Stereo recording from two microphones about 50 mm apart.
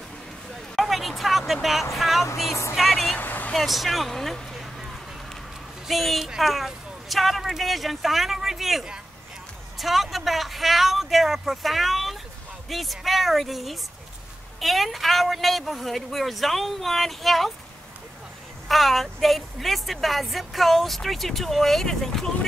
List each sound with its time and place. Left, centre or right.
0.7 s hubbub: centre
1.5 s speech: centre
2.7 s vehicle: centre
3.2 s vehicle: left
3.5 s a woman's voice: centre
5.9 s a woman's voice: centre
18.7 s a woman's voice: centre